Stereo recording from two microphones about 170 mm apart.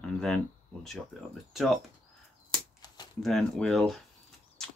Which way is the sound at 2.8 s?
25° left (ahead or behind).